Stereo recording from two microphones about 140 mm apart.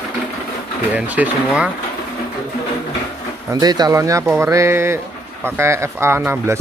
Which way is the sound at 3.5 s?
25° right (ahead or behind).